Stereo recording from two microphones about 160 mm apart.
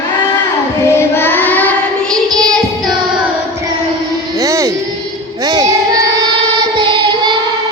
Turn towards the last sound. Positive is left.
turn(degrees=-30)  # may be behind; listen again after turning